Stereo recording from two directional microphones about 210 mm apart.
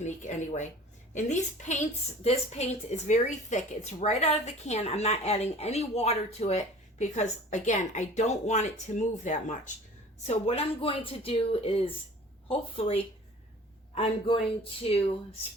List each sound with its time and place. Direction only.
0.0 s a woman's voice: 35° left (ahead or behind)